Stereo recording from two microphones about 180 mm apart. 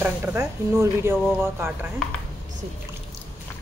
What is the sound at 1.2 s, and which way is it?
Speech, centre (ahead or behind).